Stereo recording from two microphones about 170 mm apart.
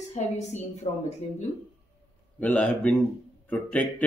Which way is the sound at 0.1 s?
40° left (ahead or behind).